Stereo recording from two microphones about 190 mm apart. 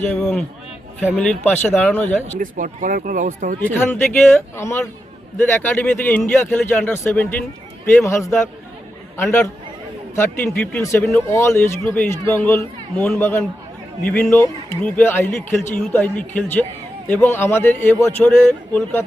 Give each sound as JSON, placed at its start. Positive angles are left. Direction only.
{"t": 0.0, "sound": "speech", "side_deg": 5}
{"t": 2.4, "sound": "speech", "side_deg": -45}
{"t": 3.6, "sound": "a man's voice", "side_deg": 10}